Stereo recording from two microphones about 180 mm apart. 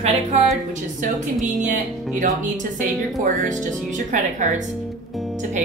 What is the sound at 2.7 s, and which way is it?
Speech, 45° right (ahead or behind).